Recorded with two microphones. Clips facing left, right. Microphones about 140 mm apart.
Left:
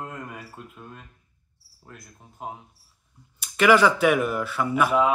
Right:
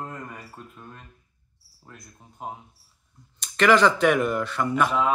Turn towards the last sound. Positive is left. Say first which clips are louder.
# left 2 dB
turn(degrees=10)  # may be behind; listen again after turning